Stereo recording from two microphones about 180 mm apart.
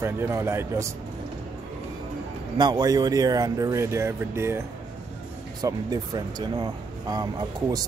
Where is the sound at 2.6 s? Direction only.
25° right (ahead or behind).